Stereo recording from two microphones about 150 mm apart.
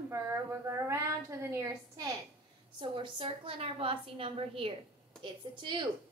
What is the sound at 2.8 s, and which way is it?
A woman's voice, 35° right (ahead or behind).